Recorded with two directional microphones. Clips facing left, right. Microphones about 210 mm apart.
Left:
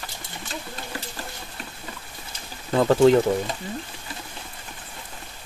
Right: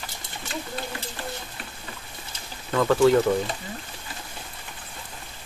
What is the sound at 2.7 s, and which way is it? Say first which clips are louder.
Speech: left 2 dB; 35° left (ahead or behind).